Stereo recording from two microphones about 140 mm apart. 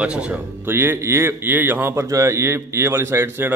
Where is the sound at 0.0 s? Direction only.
10° right (ahead or behind).